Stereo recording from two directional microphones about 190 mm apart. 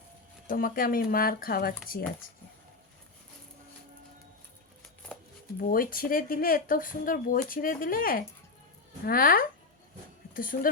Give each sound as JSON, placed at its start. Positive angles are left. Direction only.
{"t": 0.4, "sound": "speech", "side_deg": 50}
{"t": 5.5, "sound": "speech", "side_deg": 50}